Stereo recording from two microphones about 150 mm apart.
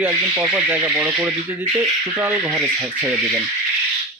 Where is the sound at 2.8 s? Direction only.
20° right (ahead or behind).